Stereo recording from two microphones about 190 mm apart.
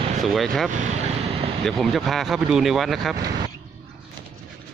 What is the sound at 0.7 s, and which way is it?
Vehicle, 40° right (ahead or behind).